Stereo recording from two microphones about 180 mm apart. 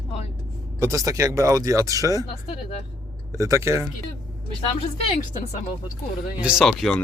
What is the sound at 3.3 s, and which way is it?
Speech, 15° right (ahead or behind).